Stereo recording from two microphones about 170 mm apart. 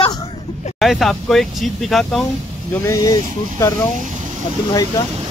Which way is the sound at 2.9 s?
20° left (ahead or behind).